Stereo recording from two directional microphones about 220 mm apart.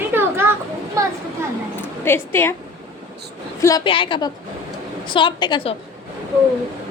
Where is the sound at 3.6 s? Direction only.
20° left (ahead or behind).